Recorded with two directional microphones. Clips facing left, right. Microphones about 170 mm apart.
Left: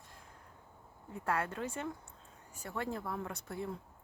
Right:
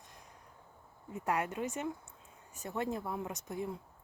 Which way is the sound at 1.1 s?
15° right (ahead or behind).